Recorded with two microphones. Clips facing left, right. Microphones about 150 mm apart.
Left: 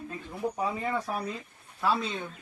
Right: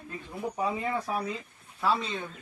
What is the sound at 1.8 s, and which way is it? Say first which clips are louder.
Speech: even; centre (ahead or behind).